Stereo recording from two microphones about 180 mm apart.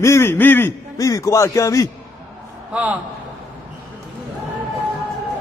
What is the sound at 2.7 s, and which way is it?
Speech, 10° right (ahead or behind).